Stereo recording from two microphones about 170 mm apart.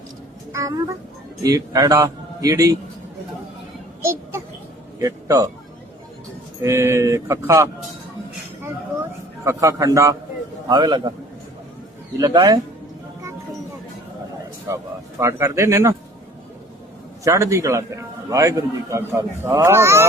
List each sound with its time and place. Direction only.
0.5 s a man's voice: 20° right (ahead or behind)
4.0 s a sound: 15° right (ahead or behind)
4.9 s a man's voice: 20° right (ahead or behind)
6.6 s a man's voice: 15° right (ahead or behind)
9.4 s a man's voice: 20° right (ahead or behind)
12.2 s a man's voice: 25° right (ahead or behind)
14.7 s a man's voice: 20° right (ahead or behind)
17.2 s a man's voice: 15° right (ahead or behind)